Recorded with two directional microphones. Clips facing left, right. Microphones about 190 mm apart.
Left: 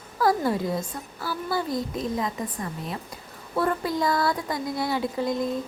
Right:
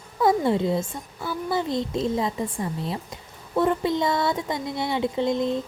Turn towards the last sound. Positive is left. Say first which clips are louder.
# right 3 dB
turn(degrees=-25)  # may be behind; listen again after turning